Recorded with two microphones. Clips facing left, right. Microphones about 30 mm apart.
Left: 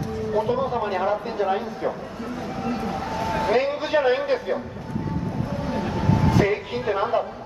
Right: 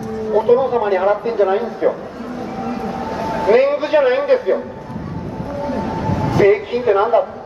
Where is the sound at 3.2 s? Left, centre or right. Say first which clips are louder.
Right 8 dB; centre.